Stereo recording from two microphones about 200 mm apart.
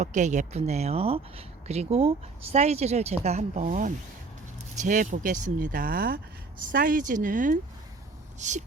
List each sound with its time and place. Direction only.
0.0 s speech: 35° right (ahead or behind)